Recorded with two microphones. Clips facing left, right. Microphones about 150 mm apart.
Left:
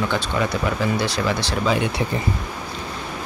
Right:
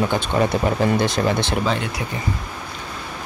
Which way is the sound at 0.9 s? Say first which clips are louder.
Right 3 dB; 50° right (ahead or behind).